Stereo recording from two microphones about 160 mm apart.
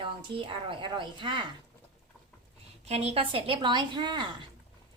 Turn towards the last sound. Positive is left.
turn(degrees=-30)  # may be behind; listen again after turning